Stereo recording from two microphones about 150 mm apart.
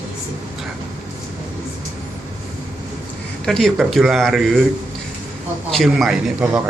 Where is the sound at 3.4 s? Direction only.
Centre (ahead or behind).